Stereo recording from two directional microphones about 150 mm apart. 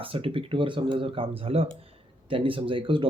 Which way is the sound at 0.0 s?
35° right (ahead or behind).